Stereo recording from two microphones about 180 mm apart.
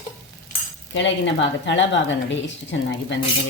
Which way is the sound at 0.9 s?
85° left.